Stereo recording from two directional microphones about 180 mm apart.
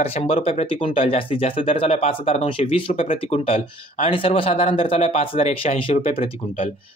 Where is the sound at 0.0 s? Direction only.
35° left (ahead or behind).